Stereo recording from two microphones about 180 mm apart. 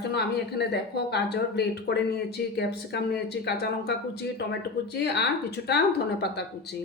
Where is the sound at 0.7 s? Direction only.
65° left (ahead or behind).